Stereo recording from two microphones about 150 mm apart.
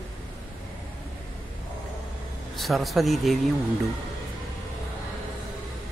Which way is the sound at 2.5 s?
Centre (ahead or behind).